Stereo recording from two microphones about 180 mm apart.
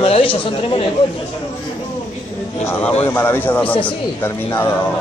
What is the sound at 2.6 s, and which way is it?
Speech, 10° left (ahead or behind).